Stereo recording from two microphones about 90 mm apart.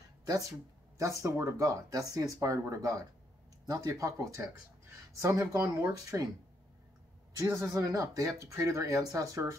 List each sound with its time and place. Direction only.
0.9 s speech: 35° right (ahead or behind)
7.3 s speech: 35° right (ahead or behind)